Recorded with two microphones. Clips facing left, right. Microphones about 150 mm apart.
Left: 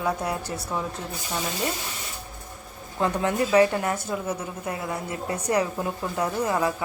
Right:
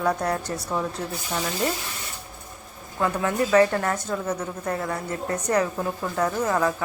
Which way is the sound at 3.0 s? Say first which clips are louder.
Even; 20° left (ahead or behind).